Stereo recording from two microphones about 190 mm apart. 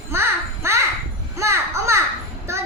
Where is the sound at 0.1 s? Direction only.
15° right (ahead or behind).